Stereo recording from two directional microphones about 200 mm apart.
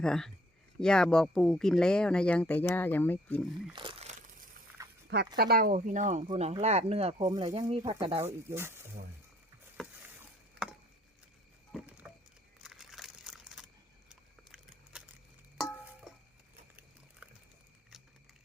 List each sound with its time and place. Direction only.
0.0 s speech: 5° left (ahead or behind)
3.7 s speech: 25° right (ahead or behind)
5.4 s speech: 50° right (ahead or behind); by 7.9 s 30° right (ahead or behind)
8.2 s speech: 10° right (ahead or behind)
11.7 s a sound: 5° right (ahead or behind)